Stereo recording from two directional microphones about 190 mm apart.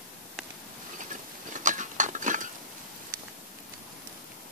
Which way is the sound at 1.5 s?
40° right (ahead or behind).